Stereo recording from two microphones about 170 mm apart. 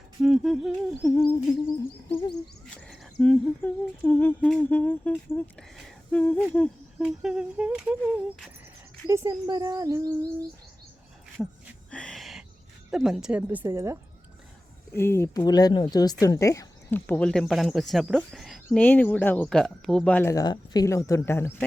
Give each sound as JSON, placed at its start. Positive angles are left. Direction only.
{"t": 0.2, "sound": "speech", "side_deg": 0}
{"t": 1.5, "sound": "speech", "side_deg": 20}
{"t": 2.3, "sound": "humming", "side_deg": 5}
{"t": 7.0, "sound": "speech", "side_deg": -5}
{"t": 9.0, "sound": "speech", "side_deg": -20}
{"t": 11.4, "sound": "humming", "side_deg": 10}
{"t": 11.9, "sound": "a sound", "side_deg": 5}
{"t": 12.9, "sound": "a woman's voice", "side_deg": -5}
{"t": 14.9, "sound": "speech", "side_deg": 15}
{"t": 18.8, "sound": "humming", "side_deg": 10}
{"t": 20.3, "sound": "speech", "side_deg": 20}